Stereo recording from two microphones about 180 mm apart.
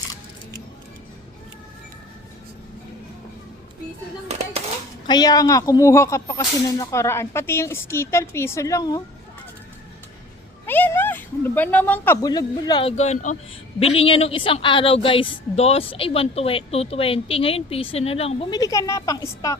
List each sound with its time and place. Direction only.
5.0 s speech: 20° left (ahead or behind)
10.7 s a sound: 10° left (ahead or behind)
13.0 s a woman's voice: 40° left (ahead or behind)
18.5 s a woman's voice: 20° left (ahead or behind)